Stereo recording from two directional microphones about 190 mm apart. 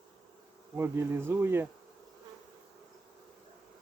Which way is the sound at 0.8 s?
15° right (ahead or behind).